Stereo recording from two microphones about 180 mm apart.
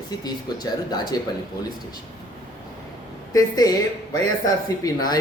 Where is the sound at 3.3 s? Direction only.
20° left (ahead or behind).